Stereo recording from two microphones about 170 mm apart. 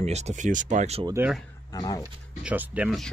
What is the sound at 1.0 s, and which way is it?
Speech, 15° right (ahead or behind).